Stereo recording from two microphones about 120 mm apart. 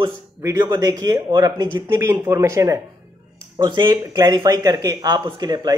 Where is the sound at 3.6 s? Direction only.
35° right (ahead or behind).